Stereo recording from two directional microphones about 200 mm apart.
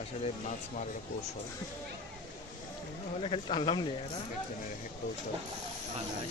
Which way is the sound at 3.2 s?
25° left (ahead or behind).